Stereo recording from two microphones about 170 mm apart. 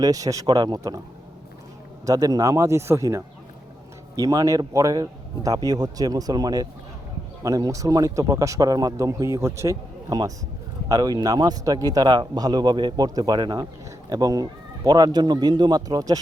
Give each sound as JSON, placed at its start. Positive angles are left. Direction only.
{"t": 0.0, "sound": "speech", "side_deg": -20}
{"t": 2.0, "sound": "speech", "side_deg": -20}